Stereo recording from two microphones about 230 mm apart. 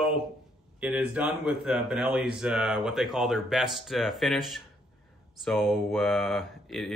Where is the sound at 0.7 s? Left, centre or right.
Centre.